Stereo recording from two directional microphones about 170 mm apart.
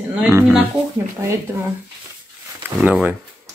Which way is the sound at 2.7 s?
5° right (ahead or behind).